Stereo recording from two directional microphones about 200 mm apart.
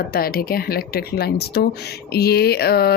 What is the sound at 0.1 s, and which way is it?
Speech, 50° left (ahead or behind).